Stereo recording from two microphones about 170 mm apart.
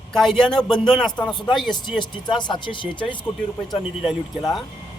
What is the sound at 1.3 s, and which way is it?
Speech, 30° left (ahead or behind).